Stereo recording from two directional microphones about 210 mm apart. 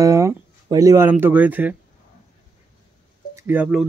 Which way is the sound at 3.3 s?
10° right (ahead or behind).